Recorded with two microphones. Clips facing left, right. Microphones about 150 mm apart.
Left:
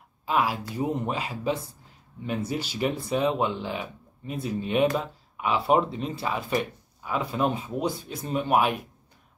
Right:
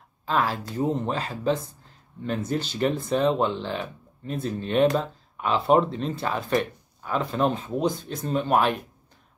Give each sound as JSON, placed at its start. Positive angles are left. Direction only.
{"t": 0.2, "sound": "speech", "side_deg": 10}